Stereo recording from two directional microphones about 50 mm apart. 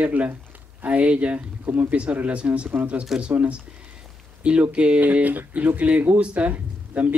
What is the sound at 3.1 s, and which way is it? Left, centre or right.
Speech, centre.